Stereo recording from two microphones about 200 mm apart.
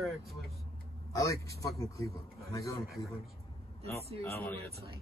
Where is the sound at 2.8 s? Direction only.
Centre (ahead or behind).